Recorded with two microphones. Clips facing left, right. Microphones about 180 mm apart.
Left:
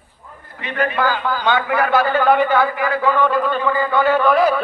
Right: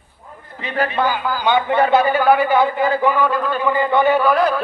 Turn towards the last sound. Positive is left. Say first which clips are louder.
# left 1 dB
turn(degrees=0)  # may be behind; listen again after turning